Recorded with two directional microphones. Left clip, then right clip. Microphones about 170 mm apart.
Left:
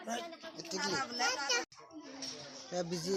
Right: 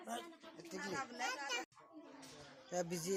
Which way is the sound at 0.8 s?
20° left (ahead or behind).